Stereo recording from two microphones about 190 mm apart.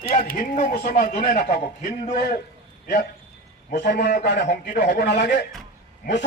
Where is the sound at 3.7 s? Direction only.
60° left (ahead or behind).